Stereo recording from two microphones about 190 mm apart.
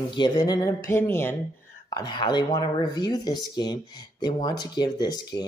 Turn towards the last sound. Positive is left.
turn(degrees=20)  # may be behind; listen again after turning